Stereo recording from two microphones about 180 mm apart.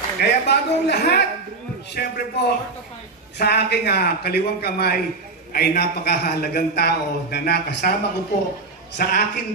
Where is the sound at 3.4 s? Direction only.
65° left (ahead or behind).